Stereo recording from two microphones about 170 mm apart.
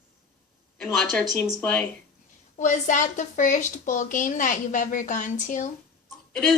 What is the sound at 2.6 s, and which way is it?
Speech, 45° left (ahead or behind).